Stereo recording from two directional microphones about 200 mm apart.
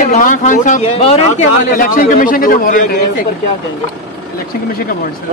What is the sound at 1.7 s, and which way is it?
A man's voice, 45° left (ahead or behind).